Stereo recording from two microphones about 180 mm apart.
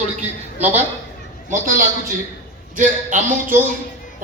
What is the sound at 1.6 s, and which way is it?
Speech, 50° right (ahead or behind).